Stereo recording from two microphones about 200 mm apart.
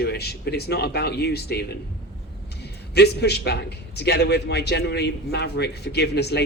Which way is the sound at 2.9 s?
55° left (ahead or behind).